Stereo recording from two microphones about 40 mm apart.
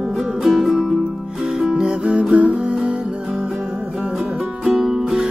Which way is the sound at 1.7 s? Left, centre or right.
Right.